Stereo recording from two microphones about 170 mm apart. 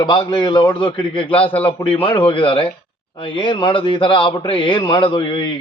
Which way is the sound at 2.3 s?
30° left (ahead or behind).